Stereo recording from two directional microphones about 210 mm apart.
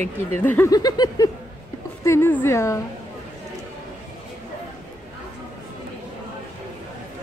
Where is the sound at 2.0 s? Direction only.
10° left (ahead or behind).